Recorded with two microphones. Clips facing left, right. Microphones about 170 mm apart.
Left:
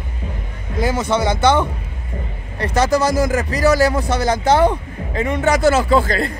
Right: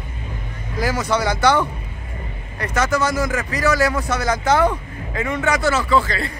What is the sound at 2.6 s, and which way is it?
A man's voice, 35° left (ahead or behind).